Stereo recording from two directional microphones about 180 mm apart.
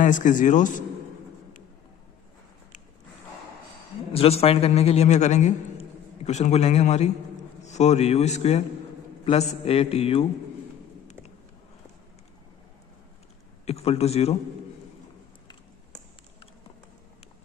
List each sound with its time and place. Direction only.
0.0 s a man's voice: 45° left (ahead or behind)
4.1 s a man's voice: 35° left (ahead or behind)
13.7 s a man's voice: 35° left (ahead or behind)